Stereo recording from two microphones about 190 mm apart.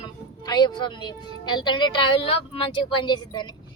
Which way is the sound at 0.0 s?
20° left (ahead or behind).